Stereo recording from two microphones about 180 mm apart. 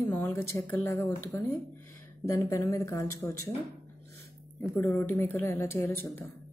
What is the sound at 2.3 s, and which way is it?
Speech, 15° left (ahead or behind).